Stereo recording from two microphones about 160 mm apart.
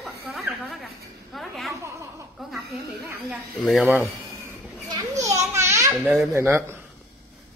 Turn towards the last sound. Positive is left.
turn(degrees=-15)  # may be behind; listen again after turning